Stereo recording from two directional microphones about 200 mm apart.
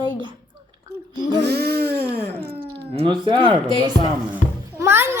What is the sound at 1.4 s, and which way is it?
Speech, 55° right (ahead or behind).